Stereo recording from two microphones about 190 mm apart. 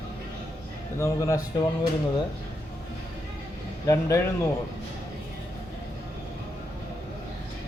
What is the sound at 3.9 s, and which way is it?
Speech, 15° left (ahead or behind).